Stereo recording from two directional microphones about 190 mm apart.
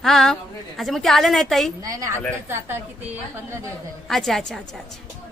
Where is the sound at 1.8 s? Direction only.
15° right (ahead or behind).